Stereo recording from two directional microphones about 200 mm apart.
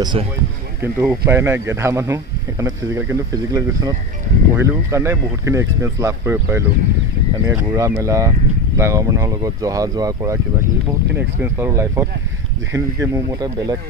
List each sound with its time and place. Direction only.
0.0 s speech: 25° right (ahead or behind)
0.9 s speech: 10° right (ahead or behind)